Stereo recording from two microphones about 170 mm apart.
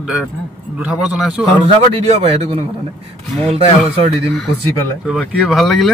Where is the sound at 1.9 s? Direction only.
35° right (ahead or behind).